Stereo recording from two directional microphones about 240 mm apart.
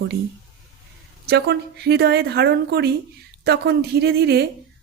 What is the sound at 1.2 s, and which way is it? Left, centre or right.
Speech, right.